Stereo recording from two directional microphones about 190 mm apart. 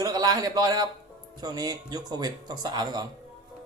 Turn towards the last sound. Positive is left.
turn(degrees=-20)  # may be behind; listen again after turning